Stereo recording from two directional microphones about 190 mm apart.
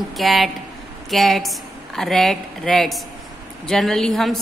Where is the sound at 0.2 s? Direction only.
Centre (ahead or behind).